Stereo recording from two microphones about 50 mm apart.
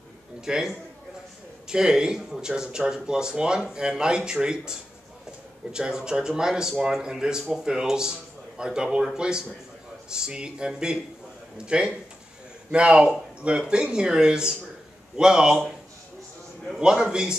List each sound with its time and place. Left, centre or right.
0.5 s a man's voice: centre
16.8 s speech: centre